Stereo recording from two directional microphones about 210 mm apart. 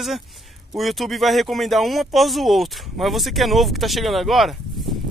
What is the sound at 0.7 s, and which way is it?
Speech, centre (ahead or behind).